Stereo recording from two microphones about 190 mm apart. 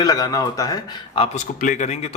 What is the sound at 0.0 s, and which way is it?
Speech, 20° left (ahead or behind).